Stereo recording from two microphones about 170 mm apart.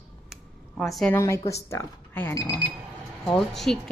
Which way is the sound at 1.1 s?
15° left (ahead or behind).